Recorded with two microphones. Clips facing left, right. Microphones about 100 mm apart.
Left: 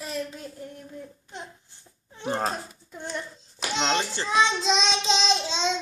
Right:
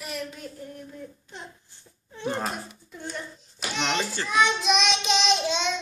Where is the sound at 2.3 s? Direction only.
35° left (ahead or behind).